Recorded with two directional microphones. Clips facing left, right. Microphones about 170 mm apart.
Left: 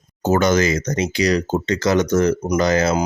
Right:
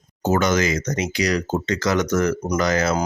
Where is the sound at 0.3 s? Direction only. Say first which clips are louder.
Left 3 dB; 30° left (ahead or behind).